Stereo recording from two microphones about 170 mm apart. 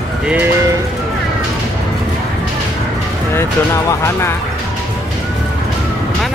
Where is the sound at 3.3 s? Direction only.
15° left (ahead or behind).